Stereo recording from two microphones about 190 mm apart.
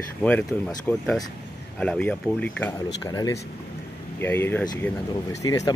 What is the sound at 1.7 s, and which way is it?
Speech, 5° left (ahead or behind).